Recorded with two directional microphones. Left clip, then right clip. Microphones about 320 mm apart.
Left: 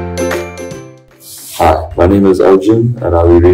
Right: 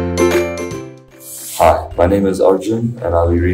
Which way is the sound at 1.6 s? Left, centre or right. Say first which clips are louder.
Left 2 dB; centre.